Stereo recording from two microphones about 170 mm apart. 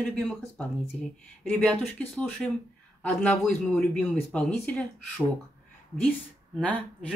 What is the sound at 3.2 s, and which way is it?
Speech, 5° left (ahead or behind).